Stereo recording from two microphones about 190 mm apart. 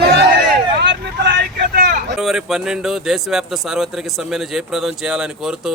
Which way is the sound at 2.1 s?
Centre (ahead or behind).